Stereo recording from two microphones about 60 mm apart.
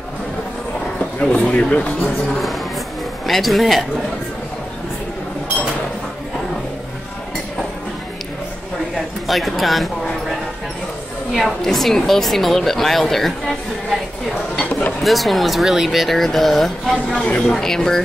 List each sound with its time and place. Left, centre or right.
0.9 s speech: centre
3.3 s a woman's voice: centre
9.3 s a sound: centre
11.3 s a woman's voice: centre
15.0 s a woman's voice: centre